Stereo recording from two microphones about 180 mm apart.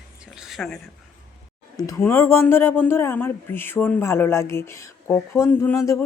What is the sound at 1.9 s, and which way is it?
Speech, 15° left (ahead or behind).